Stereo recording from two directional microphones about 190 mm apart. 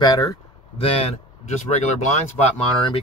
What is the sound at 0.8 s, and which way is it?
Speech, 30° left (ahead or behind).